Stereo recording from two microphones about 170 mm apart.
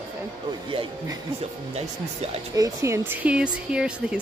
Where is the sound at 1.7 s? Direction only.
40° right (ahead or behind).